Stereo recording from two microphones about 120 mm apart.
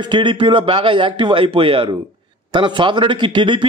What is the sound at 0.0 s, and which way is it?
A man's voice, 40° right (ahead or behind).